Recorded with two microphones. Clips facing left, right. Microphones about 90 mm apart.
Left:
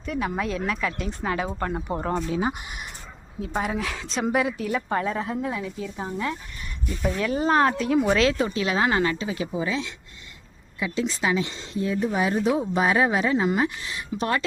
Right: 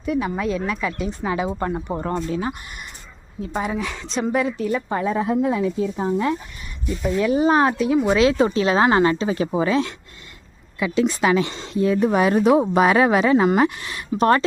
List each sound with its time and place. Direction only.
0.0 s a woman's voice: 5° right (ahead or behind)
2.0 s a woman's voice: 5° left (ahead or behind); by 6.3 s 25° right (ahead or behind)
7.0 s speech: 5° right (ahead or behind); by 8.4 s 20° right (ahead or behind)
8.5 s speech: 35° right (ahead or behind)
9.6 s speech: 55° right (ahead or behind)
10.8 s speech: 75° right (ahead or behind)
11.0 s speech: 60° right (ahead or behind)